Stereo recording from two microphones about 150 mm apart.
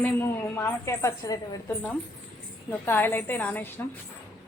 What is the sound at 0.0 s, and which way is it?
A woman's voice, 15° left (ahead or behind).